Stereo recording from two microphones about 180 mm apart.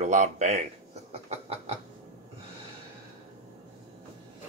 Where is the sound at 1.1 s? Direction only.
35° right (ahead or behind).